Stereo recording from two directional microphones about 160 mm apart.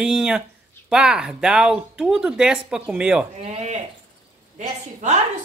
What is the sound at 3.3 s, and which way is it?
A woman's voice, 45° right (ahead or behind).